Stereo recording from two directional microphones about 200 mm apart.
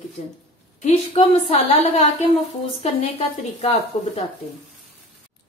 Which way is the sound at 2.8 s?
30° left (ahead or behind).